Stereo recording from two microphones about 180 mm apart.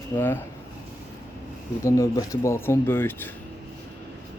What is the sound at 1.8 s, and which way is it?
A man's voice, 15° left (ahead or behind).